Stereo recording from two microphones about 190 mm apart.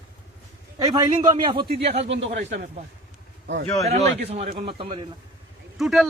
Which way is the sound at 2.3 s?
45° right (ahead or behind).